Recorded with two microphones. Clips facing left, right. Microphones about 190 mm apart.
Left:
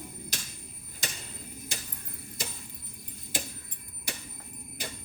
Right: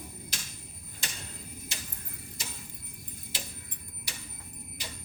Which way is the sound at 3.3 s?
50° left (ahead or behind).